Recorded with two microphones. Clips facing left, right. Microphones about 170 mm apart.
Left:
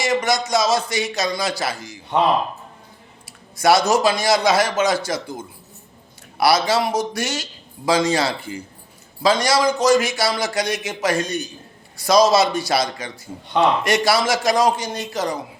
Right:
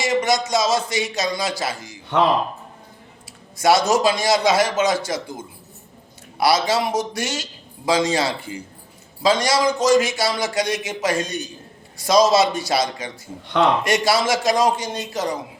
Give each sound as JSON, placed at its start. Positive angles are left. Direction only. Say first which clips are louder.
{"t": 0.0, "sound": "a man's voice", "louder": "even", "side_deg": -20}
{"t": 3.6, "sound": "a man's voice", "louder": "left 1 dB", "side_deg": -20}
{"t": 6.4, "sound": "a man's voice", "louder": "left 1 dB", "side_deg": -20}